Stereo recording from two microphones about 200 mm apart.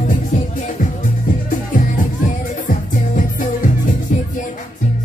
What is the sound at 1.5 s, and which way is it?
Music, 40° left (ahead or behind).